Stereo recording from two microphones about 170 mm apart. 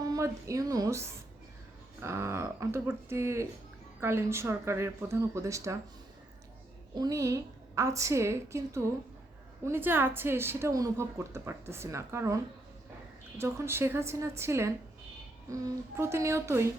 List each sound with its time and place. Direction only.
0.0 s a woman's voice: 20° right (ahead or behind)
6.9 s a woman's voice: 20° right (ahead or behind)
13.4 s a woman's voice: 15° right (ahead or behind)